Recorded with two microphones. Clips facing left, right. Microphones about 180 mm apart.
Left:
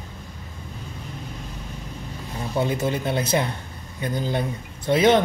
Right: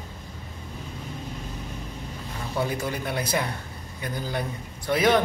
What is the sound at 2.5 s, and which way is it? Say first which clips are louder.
Speech: left 4 dB; 25° left (ahead or behind).